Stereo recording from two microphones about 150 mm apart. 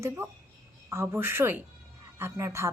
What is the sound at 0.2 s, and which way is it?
A woman's voice, 15° right (ahead or behind).